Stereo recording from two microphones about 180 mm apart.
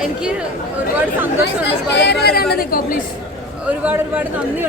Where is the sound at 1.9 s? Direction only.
65° left (ahead or behind).